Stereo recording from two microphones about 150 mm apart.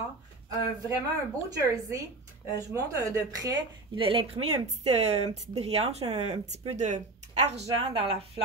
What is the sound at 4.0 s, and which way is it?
A woman's voice, 40° right (ahead or behind).